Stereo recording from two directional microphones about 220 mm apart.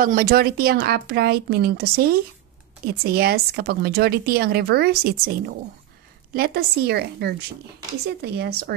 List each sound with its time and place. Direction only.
0.0 s speech: 40° right (ahead or behind)